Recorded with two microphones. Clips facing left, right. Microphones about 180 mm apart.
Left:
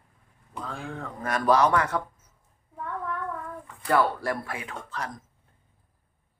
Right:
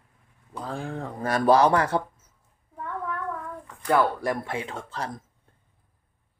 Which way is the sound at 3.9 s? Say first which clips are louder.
Right 1 dB; 20° right (ahead or behind).